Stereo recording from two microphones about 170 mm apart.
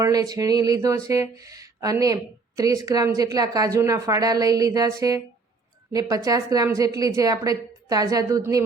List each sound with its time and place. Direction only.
0.0 s a woman's voice: 20° right (ahead or behind)